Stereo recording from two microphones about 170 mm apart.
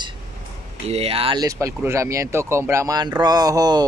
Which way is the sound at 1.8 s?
15° right (ahead or behind).